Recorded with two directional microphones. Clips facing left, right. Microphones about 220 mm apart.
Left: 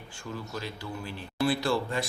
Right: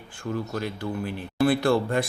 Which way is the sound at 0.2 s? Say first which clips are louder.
Right 8 dB; 55° right (ahead or behind).